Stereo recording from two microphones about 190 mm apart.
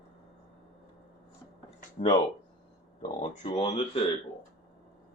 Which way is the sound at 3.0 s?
25° left (ahead or behind).